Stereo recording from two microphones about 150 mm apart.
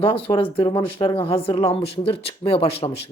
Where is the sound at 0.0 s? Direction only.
35° left (ahead or behind).